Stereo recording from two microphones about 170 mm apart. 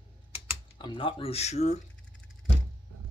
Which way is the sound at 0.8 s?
30° left (ahead or behind).